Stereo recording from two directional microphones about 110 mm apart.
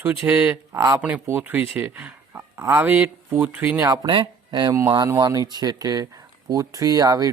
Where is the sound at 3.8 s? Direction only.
35° right (ahead or behind).